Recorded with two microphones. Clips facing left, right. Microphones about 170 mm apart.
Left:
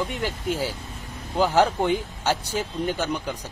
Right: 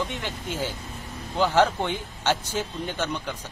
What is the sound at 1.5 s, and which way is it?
Speech, 10° left (ahead or behind).